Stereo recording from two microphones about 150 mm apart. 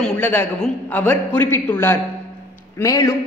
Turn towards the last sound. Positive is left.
turn(degrees=20)  # may be behind; listen again after turning